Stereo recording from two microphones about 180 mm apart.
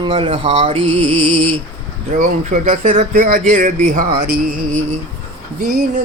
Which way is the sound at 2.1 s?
45° right (ahead or behind).